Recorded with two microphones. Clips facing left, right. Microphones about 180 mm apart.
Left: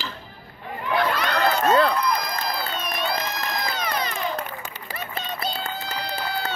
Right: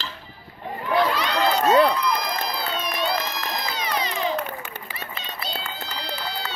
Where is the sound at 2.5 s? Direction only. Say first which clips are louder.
Right 1 dB; 50° left (ahead or behind).